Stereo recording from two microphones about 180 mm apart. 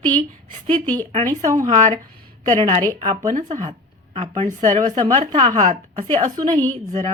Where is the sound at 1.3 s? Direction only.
20° right (ahead or behind); by 6.3 s 40° right (ahead or behind).